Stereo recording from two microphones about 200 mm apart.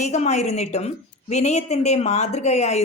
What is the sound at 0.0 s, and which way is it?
A woman's voice, 35° left (ahead or behind).